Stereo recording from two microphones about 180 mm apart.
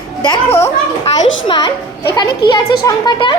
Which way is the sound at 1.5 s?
25° left (ahead or behind).